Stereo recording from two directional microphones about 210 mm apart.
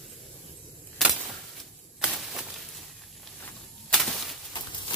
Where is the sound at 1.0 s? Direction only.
Centre (ahead or behind).